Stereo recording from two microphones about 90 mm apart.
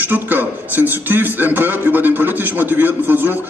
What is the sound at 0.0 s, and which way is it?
A man's voice, 20° right (ahead or behind).